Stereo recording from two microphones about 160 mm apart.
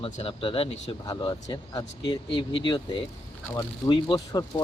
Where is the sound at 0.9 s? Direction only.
30° left (ahead or behind).